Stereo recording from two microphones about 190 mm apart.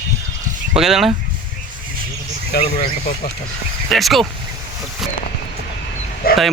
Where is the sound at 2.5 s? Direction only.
55° left (ahead or behind).